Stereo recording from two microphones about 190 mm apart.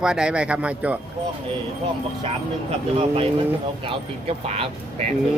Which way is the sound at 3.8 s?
30° right (ahead or behind).